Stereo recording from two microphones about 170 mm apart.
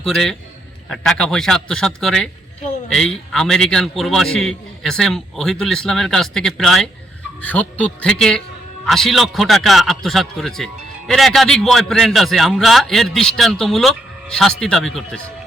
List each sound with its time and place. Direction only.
0.0 s a man's voice: centre (ahead or behind)